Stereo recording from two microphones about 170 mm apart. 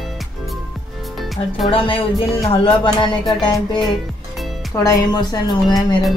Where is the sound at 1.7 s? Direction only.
30° left (ahead or behind).